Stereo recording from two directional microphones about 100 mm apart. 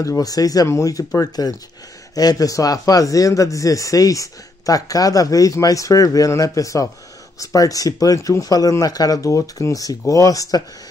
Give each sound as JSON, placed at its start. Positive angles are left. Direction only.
{"t": 0.0, "sound": "a man's voice", "side_deg": 35}